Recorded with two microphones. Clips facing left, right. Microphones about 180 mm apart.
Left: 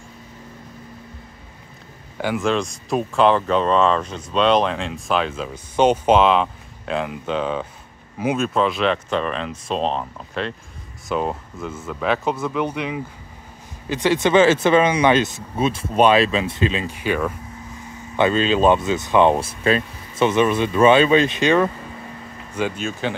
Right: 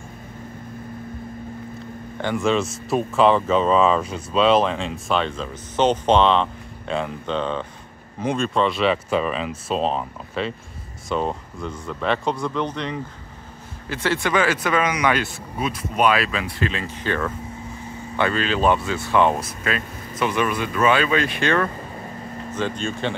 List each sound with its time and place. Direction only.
2.1 s speech: 5° left (ahead or behind)